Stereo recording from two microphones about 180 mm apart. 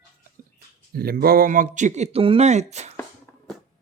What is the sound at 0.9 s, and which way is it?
Speech, 60° right (ahead or behind).